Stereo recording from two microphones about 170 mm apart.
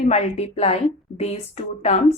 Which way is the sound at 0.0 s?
40° left (ahead or behind).